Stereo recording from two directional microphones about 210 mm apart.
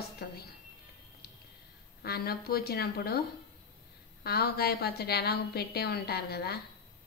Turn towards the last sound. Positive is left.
turn(degrees=50)  # may be behind; listen again after turning